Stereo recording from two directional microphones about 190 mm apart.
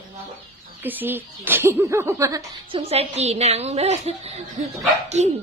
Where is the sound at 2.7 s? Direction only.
30° right (ahead or behind).